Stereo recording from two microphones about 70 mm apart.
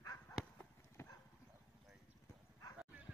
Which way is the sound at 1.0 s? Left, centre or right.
Left.